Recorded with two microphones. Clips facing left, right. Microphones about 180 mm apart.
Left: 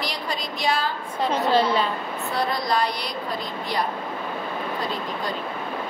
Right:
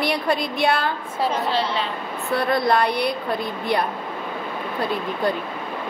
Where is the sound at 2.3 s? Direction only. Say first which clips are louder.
Right 5 dB; 60° right (ahead or behind).